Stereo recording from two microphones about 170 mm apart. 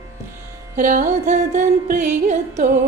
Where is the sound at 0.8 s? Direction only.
50° right (ahead or behind).